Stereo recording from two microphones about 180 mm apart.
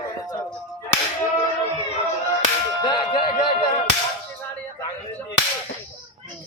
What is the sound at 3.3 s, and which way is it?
Music, 25° left (ahead or behind).